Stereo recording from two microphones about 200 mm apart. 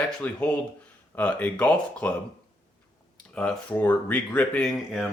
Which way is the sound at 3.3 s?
10° left (ahead or behind).